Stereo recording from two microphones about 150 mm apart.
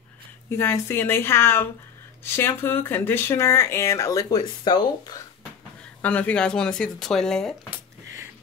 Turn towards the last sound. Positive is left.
turn(degrees=5)  # may be behind; listen again after turning